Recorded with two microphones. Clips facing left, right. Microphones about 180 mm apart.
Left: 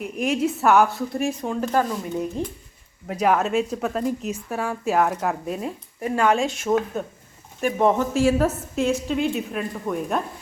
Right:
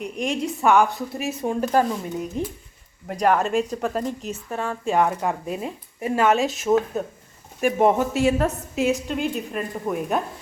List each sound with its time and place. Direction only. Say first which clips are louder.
0.0 s speech: left 3 dB; 5° left (ahead or behind); by 1.8 s 15° right (ahead or behind)
3.1 s speech: even; centre (ahead or behind)
6.0 s speech: right 1 dB; 20° right (ahead or behind)
6.3 s speech: right 2 dB; centre (ahead or behind)
8.1 s speech: left 1 dB; centre (ahead or behind)